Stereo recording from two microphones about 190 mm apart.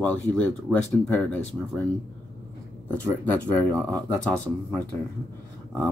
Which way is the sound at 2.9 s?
10° left (ahead or behind).